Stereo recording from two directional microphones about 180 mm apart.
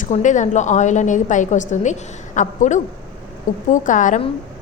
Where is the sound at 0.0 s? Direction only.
45° left (ahead or behind).